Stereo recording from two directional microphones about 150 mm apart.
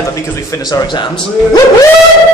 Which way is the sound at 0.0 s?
20° left (ahead or behind).